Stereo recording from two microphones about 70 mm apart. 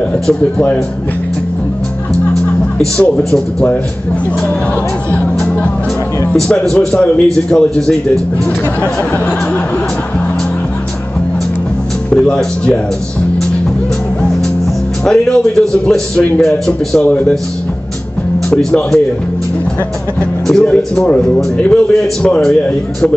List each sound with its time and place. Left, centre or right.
3.0 s a man's voice: centre
5.4 s music: centre
6.5 s a man's voice: centre
12.1 s a man's voice: centre
15.0 s a man's voice: centre
18.5 s a man's voice: centre
20.4 s a man's voice: centre